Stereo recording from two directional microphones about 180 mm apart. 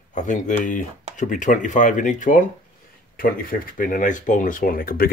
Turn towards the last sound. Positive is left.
turn(degrees=55)  # may be behind; listen again after turning